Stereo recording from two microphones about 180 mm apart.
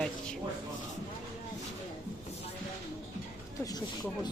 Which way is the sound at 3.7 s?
20° left (ahead or behind).